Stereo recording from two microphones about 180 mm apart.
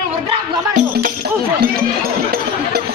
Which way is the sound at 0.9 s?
55° right (ahead or behind).